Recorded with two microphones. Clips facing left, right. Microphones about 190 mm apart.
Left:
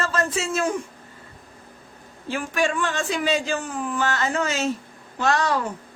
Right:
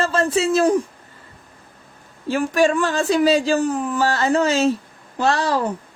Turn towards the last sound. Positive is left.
turn(degrees=-30)  # may be behind; listen again after turning